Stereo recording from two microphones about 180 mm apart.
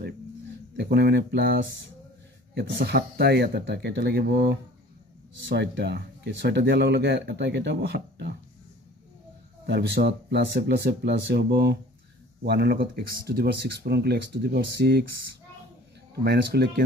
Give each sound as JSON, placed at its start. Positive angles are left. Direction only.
{"t": 0.7, "sound": "speech", "side_deg": -65}
{"t": 9.7, "sound": "speech", "side_deg": -70}
{"t": 16.3, "sound": "speech", "side_deg": -70}